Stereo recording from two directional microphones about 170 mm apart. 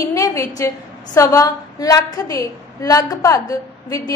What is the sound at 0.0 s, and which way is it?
A woman's voice, 20° left (ahead or behind).